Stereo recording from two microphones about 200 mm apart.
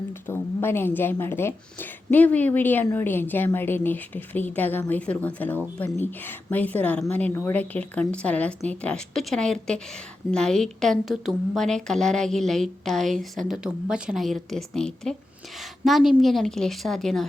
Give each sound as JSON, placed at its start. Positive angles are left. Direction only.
{"t": 0.3, "sound": "a woman's voice", "side_deg": 10}